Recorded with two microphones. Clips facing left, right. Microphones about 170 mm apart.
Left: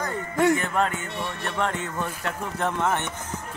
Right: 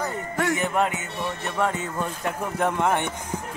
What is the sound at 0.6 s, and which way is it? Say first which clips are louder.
Speech: right 1 dB; 10° right (ahead or behind).